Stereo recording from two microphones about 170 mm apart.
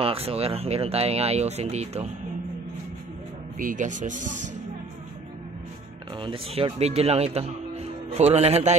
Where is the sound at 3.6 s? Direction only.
50° right (ahead or behind).